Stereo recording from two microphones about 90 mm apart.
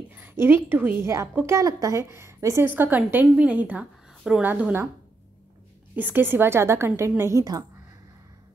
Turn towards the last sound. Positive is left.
turn(degrees=-40)  # may be behind; listen again after turning